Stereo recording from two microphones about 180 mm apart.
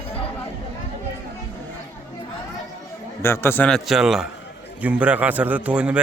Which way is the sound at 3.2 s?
15° left (ahead or behind).